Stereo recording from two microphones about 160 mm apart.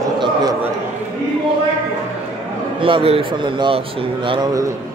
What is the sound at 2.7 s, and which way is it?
A man's voice, 35° right (ahead or behind).